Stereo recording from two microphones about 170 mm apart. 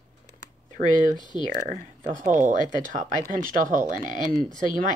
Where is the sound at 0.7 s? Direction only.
50° right (ahead or behind).